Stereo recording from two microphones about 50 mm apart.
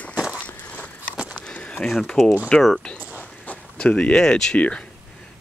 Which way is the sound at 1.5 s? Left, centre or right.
Left.